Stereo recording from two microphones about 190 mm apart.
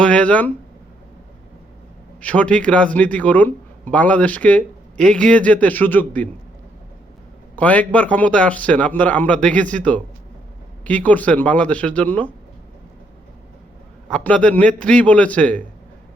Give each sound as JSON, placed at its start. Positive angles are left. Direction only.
{"t": 0.0, "sound": "a man's voice", "side_deg": 5}
{"t": 2.2, "sound": "a man's voice", "side_deg": 5}
{"t": 7.5, "sound": "a man's voice", "side_deg": 5}
{"t": 14.1, "sound": "a man's voice", "side_deg": 5}